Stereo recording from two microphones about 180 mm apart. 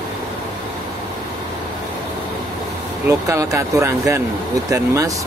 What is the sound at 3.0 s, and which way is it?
Speech, 15° right (ahead or behind).